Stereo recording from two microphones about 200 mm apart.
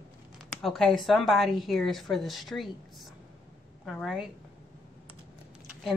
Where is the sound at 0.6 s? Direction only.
Centre (ahead or behind).